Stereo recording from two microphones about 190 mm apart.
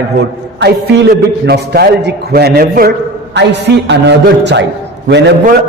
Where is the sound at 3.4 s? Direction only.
65° right (ahead or behind).